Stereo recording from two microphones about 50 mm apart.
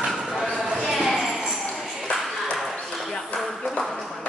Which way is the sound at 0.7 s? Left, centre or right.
Centre.